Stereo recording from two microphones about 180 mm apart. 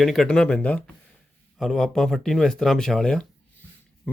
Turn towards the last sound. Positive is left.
turn(degrees=5)  # may be behind; listen again after turning